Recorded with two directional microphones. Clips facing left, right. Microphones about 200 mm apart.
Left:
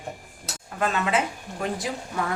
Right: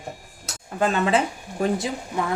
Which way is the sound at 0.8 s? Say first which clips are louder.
Right 4 dB; 30° right (ahead or behind).